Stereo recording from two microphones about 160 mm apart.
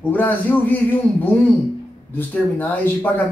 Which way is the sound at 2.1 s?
10° left (ahead or behind).